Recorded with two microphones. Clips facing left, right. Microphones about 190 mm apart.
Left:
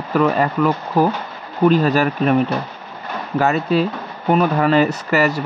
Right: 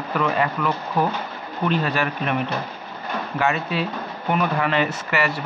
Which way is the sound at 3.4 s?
40° left (ahead or behind).